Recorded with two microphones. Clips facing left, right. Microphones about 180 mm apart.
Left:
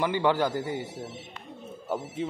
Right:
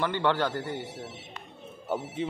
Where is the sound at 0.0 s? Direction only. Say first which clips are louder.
Left 2 dB; 10° left (ahead or behind).